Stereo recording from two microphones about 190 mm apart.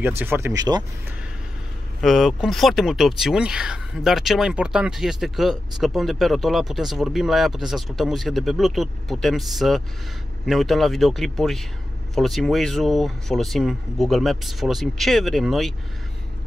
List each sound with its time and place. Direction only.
0.2 s speech: 15° right (ahead or behind)
2.0 s speech: centre (ahead or behind)